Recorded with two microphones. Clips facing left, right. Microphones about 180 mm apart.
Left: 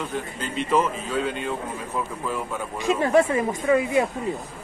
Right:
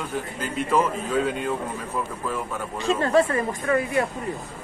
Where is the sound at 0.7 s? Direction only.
Centre (ahead or behind).